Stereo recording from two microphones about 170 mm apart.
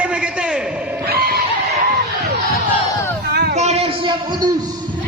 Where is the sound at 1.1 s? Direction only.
60° right (ahead or behind).